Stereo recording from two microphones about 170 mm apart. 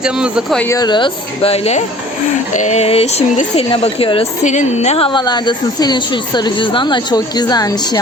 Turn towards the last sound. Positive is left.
turn(degrees=25)  # may be behind; listen again after turning